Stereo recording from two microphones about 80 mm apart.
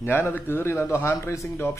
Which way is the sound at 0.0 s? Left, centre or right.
Left.